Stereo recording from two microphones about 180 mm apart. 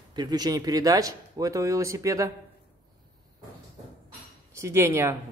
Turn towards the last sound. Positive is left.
turn(degrees=-15)  # may be behind; listen again after turning